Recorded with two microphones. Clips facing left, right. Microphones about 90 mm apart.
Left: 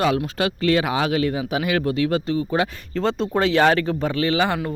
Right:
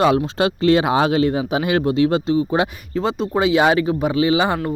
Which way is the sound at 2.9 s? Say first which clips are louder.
Right 1 dB; 5° right (ahead or behind).